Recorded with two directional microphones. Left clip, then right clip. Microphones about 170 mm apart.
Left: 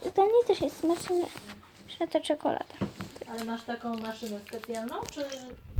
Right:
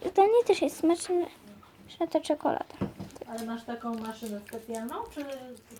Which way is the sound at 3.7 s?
30° right (ahead or behind).